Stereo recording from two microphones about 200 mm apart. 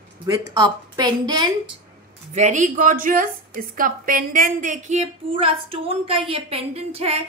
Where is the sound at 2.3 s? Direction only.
40° right (ahead or behind).